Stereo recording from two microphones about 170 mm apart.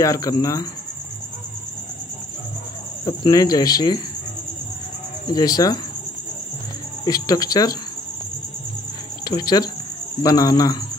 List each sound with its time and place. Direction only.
0.0 s speech: 20° left (ahead or behind)
3.1 s speech: 20° left (ahead or behind)
5.3 s speech: 20° left (ahead or behind)
7.1 s speech: 20° left (ahead or behind)
9.2 s speech: 25° left (ahead or behind)